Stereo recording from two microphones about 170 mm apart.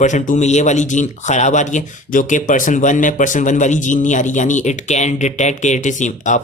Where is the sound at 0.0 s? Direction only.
45° left (ahead or behind).